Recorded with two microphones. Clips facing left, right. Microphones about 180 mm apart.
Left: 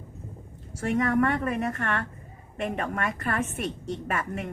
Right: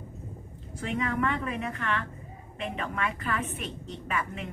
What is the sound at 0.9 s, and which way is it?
A woman's voice, 45° left (ahead or behind).